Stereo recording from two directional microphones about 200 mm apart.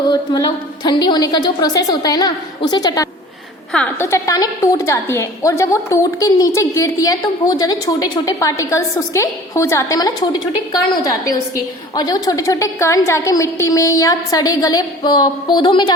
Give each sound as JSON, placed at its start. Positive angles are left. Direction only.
{"t": 0.1, "sound": "a woman's voice", "side_deg": 20}
{"t": 3.7, "sound": "a woman's voice", "side_deg": 5}